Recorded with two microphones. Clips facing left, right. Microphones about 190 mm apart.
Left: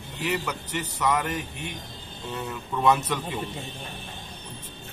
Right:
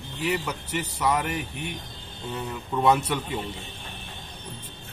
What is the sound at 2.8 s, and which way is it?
Speech, 10° right (ahead or behind).